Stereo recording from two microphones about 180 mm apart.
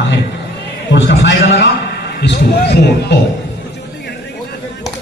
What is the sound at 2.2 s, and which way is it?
Speech, 70° left (ahead or behind).